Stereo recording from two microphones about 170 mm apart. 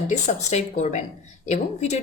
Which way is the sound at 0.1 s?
40° left (ahead or behind).